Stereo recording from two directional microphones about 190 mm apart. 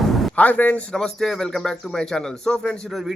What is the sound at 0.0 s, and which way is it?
A man's voice, centre (ahead or behind).